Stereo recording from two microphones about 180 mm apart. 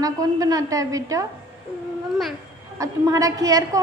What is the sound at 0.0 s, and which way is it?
A woman's voice, 20° right (ahead or behind).